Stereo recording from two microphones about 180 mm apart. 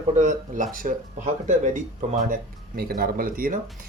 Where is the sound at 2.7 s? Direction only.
55° right (ahead or behind).